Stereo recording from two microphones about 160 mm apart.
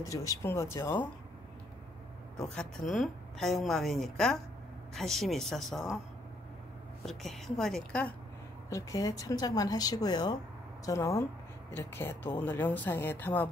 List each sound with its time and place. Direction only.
0.0 s speech: 20° left (ahead or behind)
2.3 s a woman's voice: 5° left (ahead or behind)
7.1 s a woman's voice: centre (ahead or behind)
8.6 s speech: 20° left (ahead or behind)